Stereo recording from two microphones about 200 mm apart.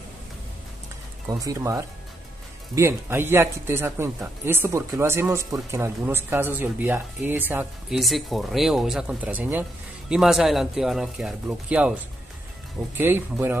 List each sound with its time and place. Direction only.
1.4 s speech: 15° right (ahead or behind)